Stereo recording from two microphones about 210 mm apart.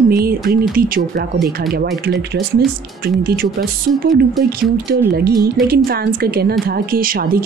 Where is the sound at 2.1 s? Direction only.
50° right (ahead or behind).